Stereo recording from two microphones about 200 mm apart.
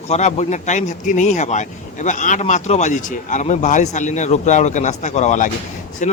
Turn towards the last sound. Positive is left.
turn(degrees=40)  # may be behind; listen again after turning